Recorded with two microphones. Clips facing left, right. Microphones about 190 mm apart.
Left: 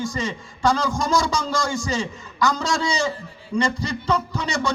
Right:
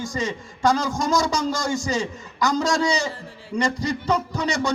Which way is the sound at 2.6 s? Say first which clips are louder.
Right 3 dB; 40° right (ahead or behind).